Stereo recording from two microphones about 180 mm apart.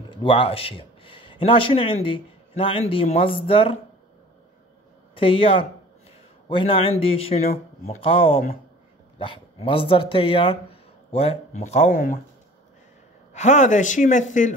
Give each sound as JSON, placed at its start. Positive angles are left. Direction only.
{"t": 0.1, "sound": "a man's voice", "side_deg": 25}
{"t": 5.1, "sound": "speech", "side_deg": 30}
{"t": 13.3, "sound": "speech", "side_deg": 40}